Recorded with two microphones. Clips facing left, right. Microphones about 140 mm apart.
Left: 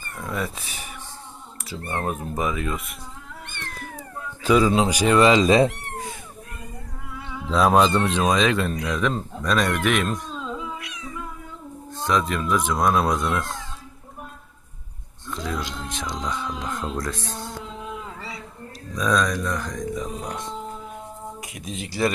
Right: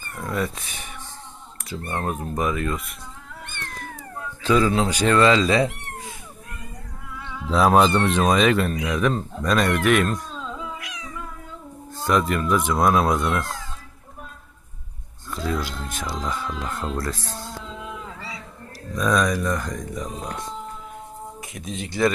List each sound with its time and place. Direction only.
0.2 s speech: centre (ahead or behind)
1.9 s speech: 5° left (ahead or behind)
4.4 s speech: 15° left (ahead or behind)
7.5 s speech: 5° right (ahead or behind)
10.8 s cat: 90° right
11.9 s speech: 5° right (ahead or behind)
15.3 s speech: 5° right (ahead or behind)
18.9 s speech: 5° right (ahead or behind)
21.6 s speech: 35° right (ahead or behind)